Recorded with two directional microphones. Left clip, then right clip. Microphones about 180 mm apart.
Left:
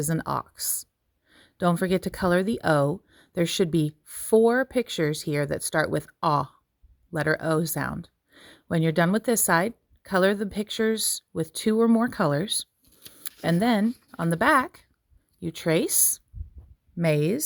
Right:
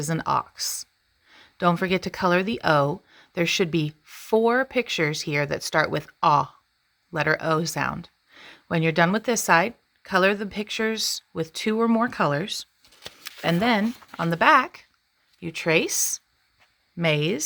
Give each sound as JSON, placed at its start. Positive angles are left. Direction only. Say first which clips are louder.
{"t": 0.0, "sound": "speech", "louder": "right 4 dB", "side_deg": 40}